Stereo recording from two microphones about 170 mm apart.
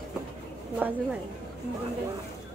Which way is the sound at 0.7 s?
10° right (ahead or behind).